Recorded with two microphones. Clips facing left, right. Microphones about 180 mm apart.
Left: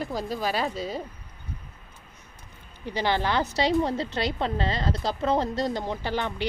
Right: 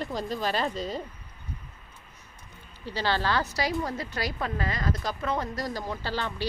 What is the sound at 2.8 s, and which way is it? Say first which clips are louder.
Speech: left 2 dB; 15° left (ahead or behind).